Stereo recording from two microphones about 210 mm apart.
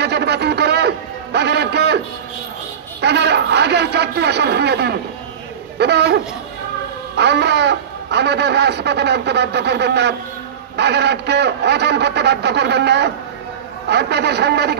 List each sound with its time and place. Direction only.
0.0 s music: 55° right (ahead or behind)
3.0 s speech: 55° right (ahead or behind)